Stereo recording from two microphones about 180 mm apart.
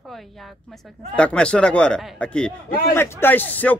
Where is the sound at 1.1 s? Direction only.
5° left (ahead or behind).